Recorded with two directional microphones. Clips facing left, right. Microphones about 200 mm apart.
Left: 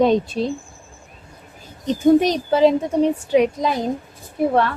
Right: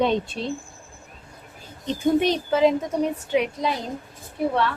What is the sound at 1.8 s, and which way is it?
A woman's voice, 40° left (ahead or behind).